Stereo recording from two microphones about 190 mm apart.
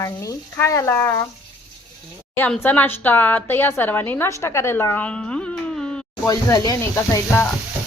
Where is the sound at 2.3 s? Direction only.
10° left (ahead or behind).